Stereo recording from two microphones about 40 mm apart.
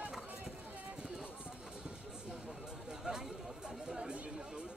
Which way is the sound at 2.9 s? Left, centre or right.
Centre.